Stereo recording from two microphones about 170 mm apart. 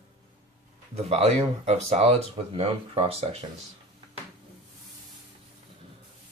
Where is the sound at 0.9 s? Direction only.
40° right (ahead or behind).